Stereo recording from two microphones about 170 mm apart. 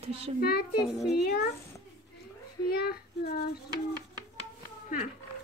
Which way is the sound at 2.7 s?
65° left (ahead or behind).